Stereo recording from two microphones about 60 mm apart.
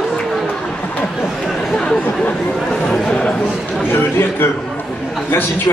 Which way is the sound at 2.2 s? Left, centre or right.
Centre.